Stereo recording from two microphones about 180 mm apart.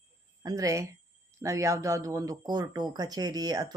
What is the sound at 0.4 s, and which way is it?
Speech, 20° right (ahead or behind).